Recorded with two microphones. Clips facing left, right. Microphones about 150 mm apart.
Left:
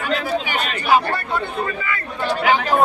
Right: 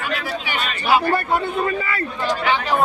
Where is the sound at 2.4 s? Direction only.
45° left (ahead or behind).